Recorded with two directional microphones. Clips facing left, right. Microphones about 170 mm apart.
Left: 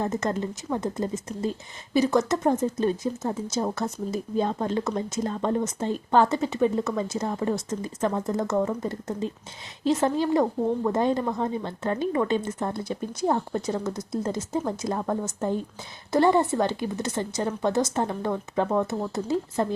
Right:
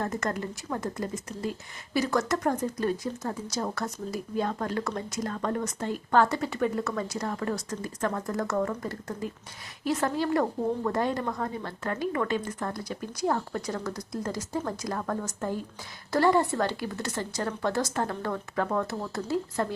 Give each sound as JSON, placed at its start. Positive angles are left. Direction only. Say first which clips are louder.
{"t": 0.0, "sound": "a woman's voice", "louder": "left 4 dB", "side_deg": 20}